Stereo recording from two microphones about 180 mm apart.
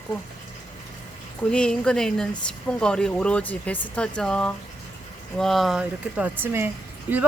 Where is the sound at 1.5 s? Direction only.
5° left (ahead or behind).